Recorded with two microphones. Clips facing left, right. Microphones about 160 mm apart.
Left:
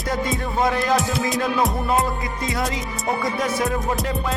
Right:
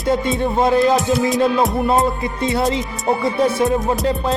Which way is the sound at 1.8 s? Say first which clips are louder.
Right 5 dB; 25° right (ahead or behind).